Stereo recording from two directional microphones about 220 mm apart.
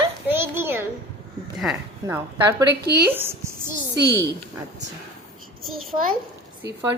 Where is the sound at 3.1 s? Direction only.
10° right (ahead or behind).